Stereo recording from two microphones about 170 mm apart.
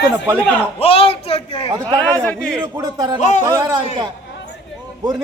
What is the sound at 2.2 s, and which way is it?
Speech, 5° left (ahead or behind).